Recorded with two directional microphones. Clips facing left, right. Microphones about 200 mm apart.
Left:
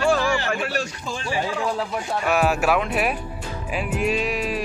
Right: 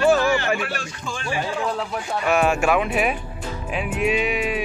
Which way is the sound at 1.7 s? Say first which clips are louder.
Left 1 dB; centre (ahead or behind).